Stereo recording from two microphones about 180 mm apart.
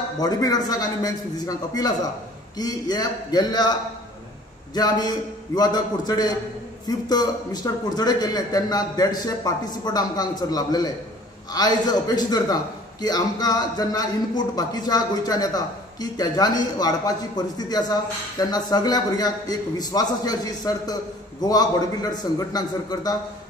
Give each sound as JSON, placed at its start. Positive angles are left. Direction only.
{"t": 0.2, "sound": "a man's voice", "side_deg": 20}
{"t": 4.7, "sound": "a man's voice", "side_deg": 20}